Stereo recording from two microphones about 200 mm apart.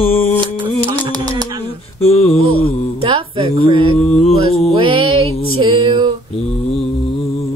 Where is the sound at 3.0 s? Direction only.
25° right (ahead or behind).